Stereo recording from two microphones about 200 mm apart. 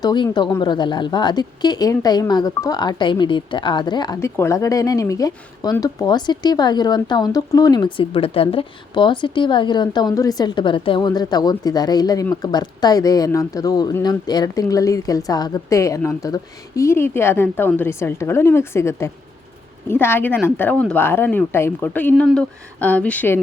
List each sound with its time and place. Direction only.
0.0 s a woman's voice: 20° left (ahead or behind)